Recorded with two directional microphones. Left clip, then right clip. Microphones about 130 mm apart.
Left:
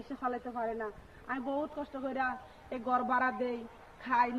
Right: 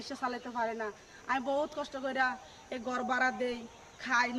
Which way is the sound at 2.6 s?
30° right (ahead or behind).